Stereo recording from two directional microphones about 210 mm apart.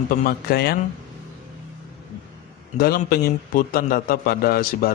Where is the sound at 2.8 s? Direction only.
45° left (ahead or behind).